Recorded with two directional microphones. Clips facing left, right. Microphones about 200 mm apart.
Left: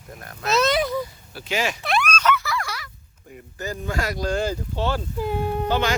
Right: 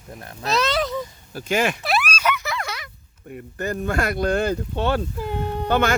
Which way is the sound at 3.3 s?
55° right (ahead or behind).